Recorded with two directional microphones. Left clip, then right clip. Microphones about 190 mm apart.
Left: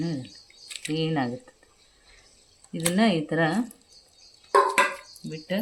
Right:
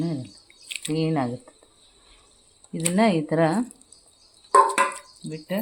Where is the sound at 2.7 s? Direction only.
30° right (ahead or behind).